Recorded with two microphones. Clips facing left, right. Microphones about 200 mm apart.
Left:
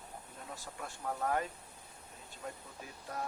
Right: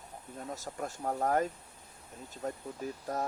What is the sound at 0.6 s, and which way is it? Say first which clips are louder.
Speech: right 7 dB; 40° right (ahead or behind).